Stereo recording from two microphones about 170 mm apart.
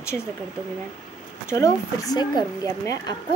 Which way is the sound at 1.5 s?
20° left (ahead or behind).